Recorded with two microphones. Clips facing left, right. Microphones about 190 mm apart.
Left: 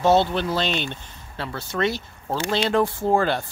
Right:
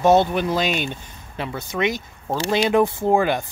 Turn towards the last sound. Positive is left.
turn(degrees=-15)  # may be behind; listen again after turning